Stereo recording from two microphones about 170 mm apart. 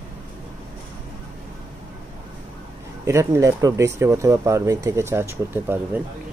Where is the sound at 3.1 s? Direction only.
20° right (ahead or behind).